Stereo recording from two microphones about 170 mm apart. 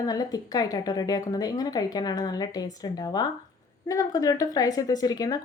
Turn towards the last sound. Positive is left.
turn(degrees=20)  # may be behind; listen again after turning